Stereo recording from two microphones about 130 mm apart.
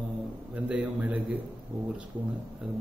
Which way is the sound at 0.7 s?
10° right (ahead or behind).